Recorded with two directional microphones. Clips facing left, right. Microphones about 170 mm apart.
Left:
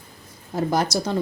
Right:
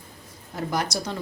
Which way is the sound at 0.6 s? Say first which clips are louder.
Left 5 dB; 30° left (ahead or behind).